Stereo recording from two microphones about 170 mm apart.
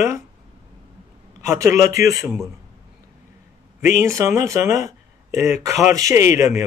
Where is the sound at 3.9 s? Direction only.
20° right (ahead or behind).